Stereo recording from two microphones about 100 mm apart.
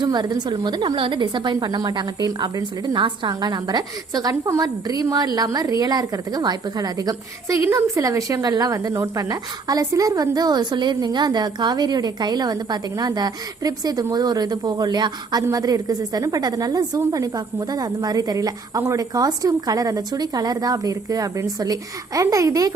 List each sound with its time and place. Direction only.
0.0 s a woman's voice: 45° right (ahead or behind)
0.9 s a woman's voice: 55° right (ahead or behind); by 22.7 s 35° right (ahead or behind)